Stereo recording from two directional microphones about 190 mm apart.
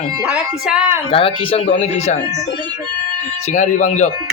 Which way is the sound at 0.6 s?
5° right (ahead or behind).